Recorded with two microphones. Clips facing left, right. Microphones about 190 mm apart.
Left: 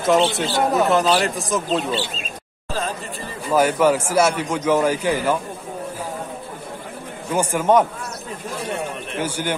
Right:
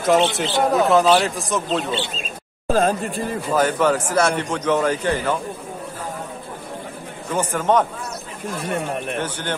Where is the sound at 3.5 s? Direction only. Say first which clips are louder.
Left 2 dB; 10° left (ahead or behind).